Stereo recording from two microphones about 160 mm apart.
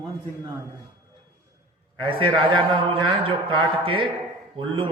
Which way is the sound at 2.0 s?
30° right (ahead or behind).